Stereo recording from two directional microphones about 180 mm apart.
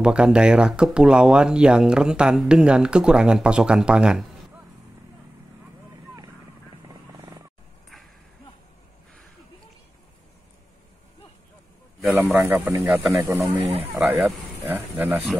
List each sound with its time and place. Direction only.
0.0 s speech: 5° right (ahead or behind)
12.1 s speech: 10° right (ahead or behind)